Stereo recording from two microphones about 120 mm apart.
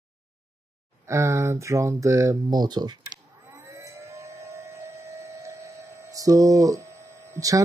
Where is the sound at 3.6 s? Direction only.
25° right (ahead or behind).